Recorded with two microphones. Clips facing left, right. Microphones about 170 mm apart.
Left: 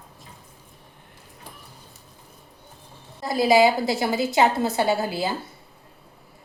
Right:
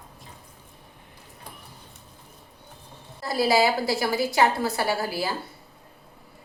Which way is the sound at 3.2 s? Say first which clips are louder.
Left 4 dB; 20° left (ahead or behind).